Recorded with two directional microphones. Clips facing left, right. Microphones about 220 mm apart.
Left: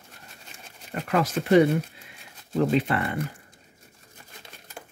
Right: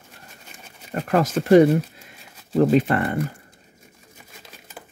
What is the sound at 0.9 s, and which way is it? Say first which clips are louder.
Speech: right 4 dB; 45° right (ahead or behind).